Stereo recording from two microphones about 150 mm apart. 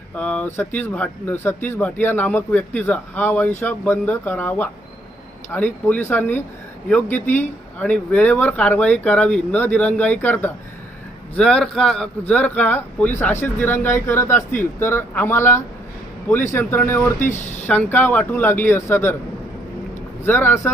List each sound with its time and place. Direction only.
0.2 s a man's voice: 10° left (ahead or behind)
20.2 s a man's voice: 15° left (ahead or behind)